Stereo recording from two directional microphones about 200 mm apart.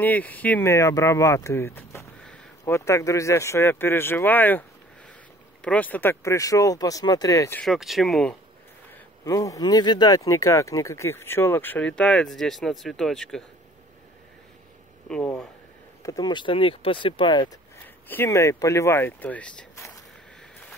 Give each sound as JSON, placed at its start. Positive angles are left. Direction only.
{"t": 0.0, "sound": "speech", "side_deg": 10}
{"t": 7.6, "sound": "speech", "side_deg": 0}
{"t": 9.2, "sound": "speech", "side_deg": 15}
{"t": 15.0, "sound": "speech", "side_deg": 5}
{"t": 16.0, "sound": "speech", "side_deg": 20}
{"t": 18.0, "sound": "speech", "side_deg": 10}